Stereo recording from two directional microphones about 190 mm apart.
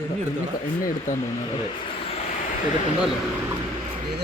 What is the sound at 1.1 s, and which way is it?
Speech, 40° left (ahead or behind).